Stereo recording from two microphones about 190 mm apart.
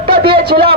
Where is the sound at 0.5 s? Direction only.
40° right (ahead or behind).